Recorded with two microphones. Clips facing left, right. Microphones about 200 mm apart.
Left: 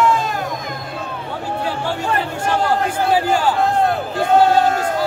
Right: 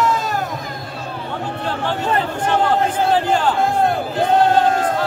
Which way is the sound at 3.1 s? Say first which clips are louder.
Left 3 dB; 10° left (ahead or behind).